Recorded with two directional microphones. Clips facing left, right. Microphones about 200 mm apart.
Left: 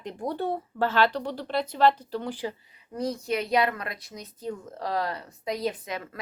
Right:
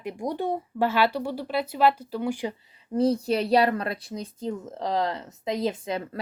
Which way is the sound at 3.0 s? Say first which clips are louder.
Right 6 dB; 30° right (ahead or behind).